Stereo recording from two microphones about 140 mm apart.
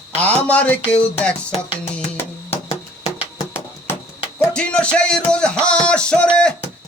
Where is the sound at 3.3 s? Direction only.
20° left (ahead or behind).